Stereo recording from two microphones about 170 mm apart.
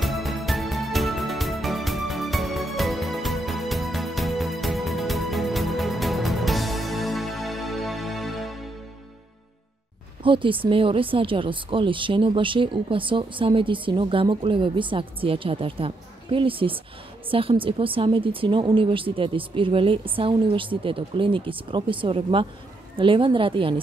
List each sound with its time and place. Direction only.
0.0 s music: centre (ahead or behind)
10.2 s speech: 30° right (ahead or behind)